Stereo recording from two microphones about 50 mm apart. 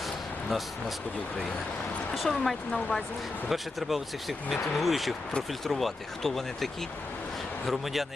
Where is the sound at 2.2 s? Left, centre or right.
Centre.